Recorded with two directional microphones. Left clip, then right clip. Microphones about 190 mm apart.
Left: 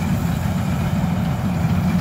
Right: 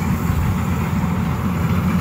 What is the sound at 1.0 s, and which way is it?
Vehicle, 50° left (ahead or behind).